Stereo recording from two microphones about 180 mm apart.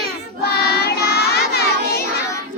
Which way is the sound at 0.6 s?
65° left (ahead or behind).